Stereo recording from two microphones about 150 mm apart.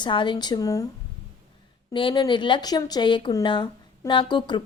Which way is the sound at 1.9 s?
35° left (ahead or behind).